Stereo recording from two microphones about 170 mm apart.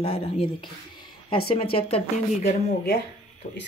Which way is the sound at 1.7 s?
35° left (ahead or behind).